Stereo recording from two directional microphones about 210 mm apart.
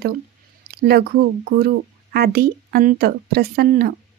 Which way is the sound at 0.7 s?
50° right (ahead or behind).